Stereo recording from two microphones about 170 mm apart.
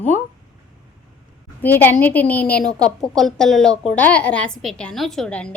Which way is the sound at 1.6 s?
10° left (ahead or behind).